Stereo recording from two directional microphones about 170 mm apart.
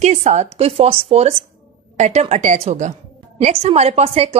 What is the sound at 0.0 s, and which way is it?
A woman's voice, 40° right (ahead or behind).